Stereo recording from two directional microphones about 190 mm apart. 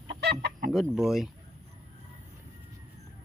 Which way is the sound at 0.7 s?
Centre (ahead or behind).